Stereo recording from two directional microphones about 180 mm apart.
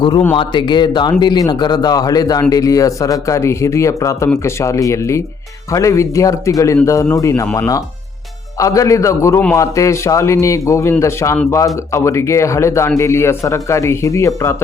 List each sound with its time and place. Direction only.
0.3 s speech: 25° left (ahead or behind)